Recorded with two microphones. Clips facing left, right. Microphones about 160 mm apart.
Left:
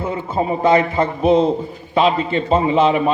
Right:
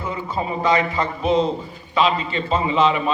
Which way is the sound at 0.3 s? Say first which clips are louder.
Left 5 dB; 50° left (ahead or behind).